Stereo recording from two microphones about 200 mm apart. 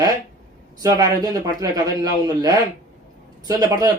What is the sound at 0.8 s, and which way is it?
Speech, 20° right (ahead or behind).